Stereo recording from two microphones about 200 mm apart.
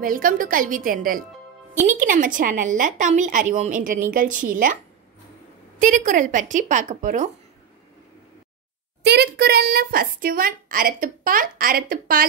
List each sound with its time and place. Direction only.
0.0 s a child's voice: 45° right (ahead or behind)
5.8 s speech: 40° right (ahead or behind)
9.0 s a child's voice: 55° right (ahead or behind)